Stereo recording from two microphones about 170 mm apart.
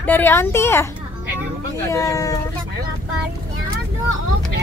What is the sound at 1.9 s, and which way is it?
Speech, 20° left (ahead or behind).